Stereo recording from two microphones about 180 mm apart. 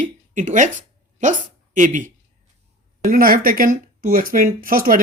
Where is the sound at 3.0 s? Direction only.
55° right (ahead or behind).